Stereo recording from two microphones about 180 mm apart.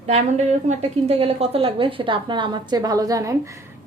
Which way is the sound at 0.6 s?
35° right (ahead or behind).